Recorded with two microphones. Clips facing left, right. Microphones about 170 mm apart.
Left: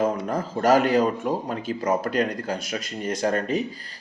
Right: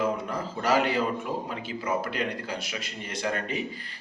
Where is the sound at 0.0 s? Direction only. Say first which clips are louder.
Left 4 dB; 45° left (ahead or behind).